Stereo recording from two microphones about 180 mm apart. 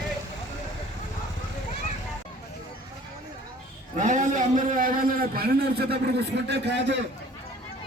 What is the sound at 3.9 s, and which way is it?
A man's voice, 45° right (ahead or behind).